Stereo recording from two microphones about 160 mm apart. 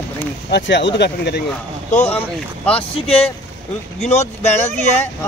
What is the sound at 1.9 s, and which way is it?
Speech, 45° left (ahead or behind).